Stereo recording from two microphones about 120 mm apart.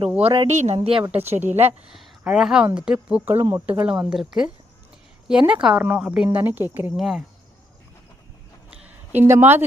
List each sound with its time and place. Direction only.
0.2 s a woman's voice: 55° right (ahead or behind)
1.9 s a sound: 5° right (ahead or behind)
2.7 s a woman's voice: 10° right (ahead or behind)
6.9 s a woman's voice: 5° right (ahead or behind)
8.7 s a sound: 10° right (ahead or behind)
9.2 s speech: 20° right (ahead or behind)